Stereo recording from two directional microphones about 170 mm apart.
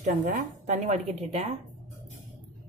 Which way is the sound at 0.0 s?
50° right (ahead or behind).